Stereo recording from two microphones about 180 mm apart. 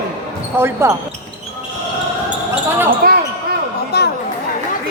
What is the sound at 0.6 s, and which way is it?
Speech, 15° right (ahead or behind).